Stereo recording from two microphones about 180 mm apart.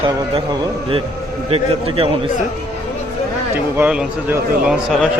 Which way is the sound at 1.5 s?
30° right (ahead or behind).